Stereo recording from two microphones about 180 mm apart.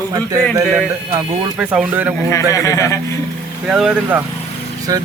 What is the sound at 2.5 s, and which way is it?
Speech, 15° left (ahead or behind).